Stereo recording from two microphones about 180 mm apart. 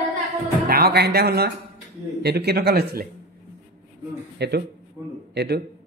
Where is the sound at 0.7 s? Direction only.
60° right (ahead or behind).